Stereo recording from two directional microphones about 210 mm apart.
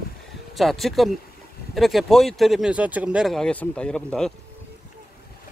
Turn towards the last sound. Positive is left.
turn(degrees=5)  # may be behind; listen again after turning